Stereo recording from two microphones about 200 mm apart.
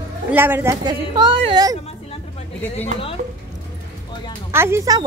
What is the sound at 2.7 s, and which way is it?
Speech, 30° left (ahead or behind).